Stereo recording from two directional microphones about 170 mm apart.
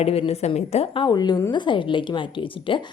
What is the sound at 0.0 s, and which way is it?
A woman's voice, 35° left (ahead or behind).